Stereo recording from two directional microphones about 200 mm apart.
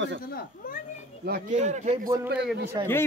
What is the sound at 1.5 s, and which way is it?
Speech, 35° right (ahead or behind).